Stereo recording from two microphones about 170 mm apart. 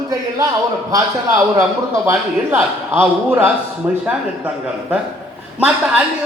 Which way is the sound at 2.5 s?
15° right (ahead or behind).